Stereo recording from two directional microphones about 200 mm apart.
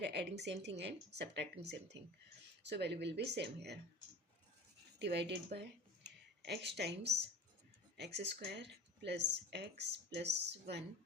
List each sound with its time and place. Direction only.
0.0 s speech: 55° right (ahead or behind)
4.9 s speech: 55° right (ahead or behind)